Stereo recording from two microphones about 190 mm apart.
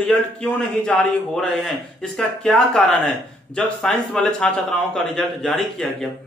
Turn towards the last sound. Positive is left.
turn(degrees=0)  # may be behind; listen again after turning